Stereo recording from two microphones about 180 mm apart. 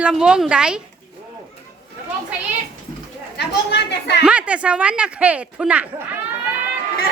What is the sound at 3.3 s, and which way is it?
Speech, 70° left (ahead or behind).